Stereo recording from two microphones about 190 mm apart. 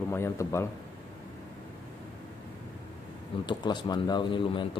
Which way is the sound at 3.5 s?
25° left (ahead or behind).